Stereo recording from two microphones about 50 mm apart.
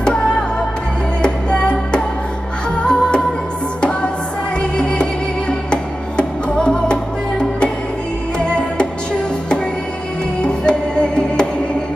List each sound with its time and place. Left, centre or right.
1.2 s music: centre
4.6 s music: centre
10.4 s music: centre